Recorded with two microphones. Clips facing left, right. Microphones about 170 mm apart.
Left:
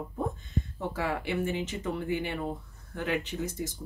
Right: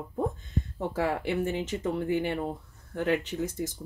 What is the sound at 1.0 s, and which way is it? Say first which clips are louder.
Speech: right 3 dB; 40° right (ahead or behind).